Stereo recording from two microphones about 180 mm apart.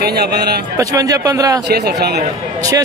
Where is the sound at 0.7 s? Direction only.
20° right (ahead or behind).